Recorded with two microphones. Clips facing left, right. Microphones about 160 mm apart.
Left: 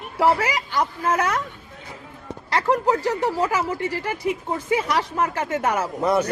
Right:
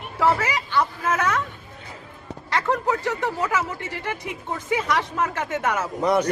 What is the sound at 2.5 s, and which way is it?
Speech, 35° left (ahead or behind).